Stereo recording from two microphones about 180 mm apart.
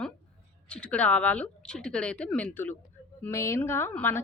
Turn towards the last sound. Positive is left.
turn(degrees=10)  # may be behind; listen again after turning